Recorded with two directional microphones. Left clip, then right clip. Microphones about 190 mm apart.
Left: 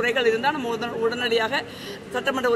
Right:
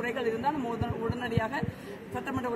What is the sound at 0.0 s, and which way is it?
A man's voice, 5° right (ahead or behind).